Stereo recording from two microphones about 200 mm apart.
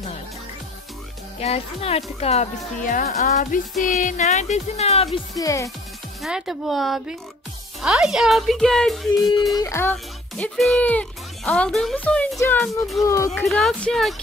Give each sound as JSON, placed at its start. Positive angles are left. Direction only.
{"t": 1.4, "sound": "speech", "side_deg": 30}
{"t": 5.3, "sound": "speech", "side_deg": 15}
{"t": 6.2, "sound": "speech", "side_deg": 0}
{"t": 9.6, "sound": "speech", "side_deg": 15}
{"t": 13.3, "sound": "speech", "side_deg": 5}